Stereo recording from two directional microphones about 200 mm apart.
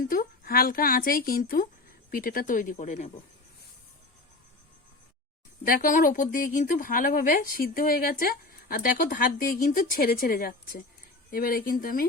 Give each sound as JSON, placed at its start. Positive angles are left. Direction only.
{"t": 0.1, "sound": "speech", "side_deg": 45}
{"t": 5.6, "sound": "speech", "side_deg": 45}